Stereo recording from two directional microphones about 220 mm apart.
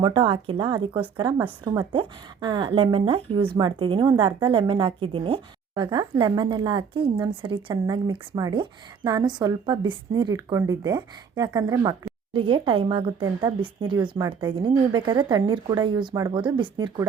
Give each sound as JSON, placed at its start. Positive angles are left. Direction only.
{"t": 0.0, "sound": "a woman's voice", "side_deg": -20}